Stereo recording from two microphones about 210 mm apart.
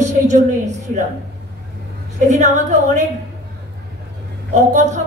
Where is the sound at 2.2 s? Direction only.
35° right (ahead or behind).